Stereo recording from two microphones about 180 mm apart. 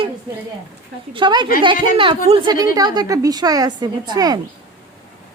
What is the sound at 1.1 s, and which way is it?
Speech, 25° right (ahead or behind).